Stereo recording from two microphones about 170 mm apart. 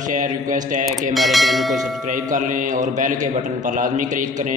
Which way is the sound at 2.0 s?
50° right (ahead or behind).